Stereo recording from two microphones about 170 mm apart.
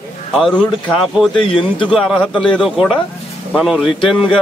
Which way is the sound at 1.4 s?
30° left (ahead or behind).